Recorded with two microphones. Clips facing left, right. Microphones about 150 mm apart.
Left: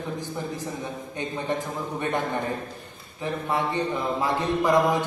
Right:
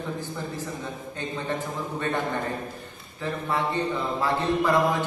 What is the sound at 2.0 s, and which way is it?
Speech, 15° left (ahead or behind).